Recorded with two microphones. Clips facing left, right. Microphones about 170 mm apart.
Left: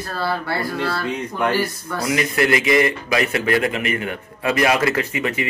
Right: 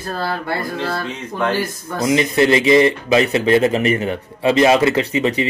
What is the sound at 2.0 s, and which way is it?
Speech, 25° right (ahead or behind).